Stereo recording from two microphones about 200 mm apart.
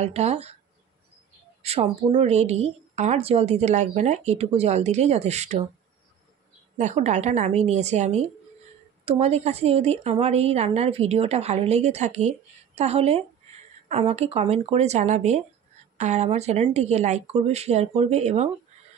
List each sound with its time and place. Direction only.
0.0 s a woman's voice: 30° right (ahead or behind)
1.6 s a woman's voice: 30° right (ahead or behind)
6.8 s a woman's voice: 35° right (ahead or behind)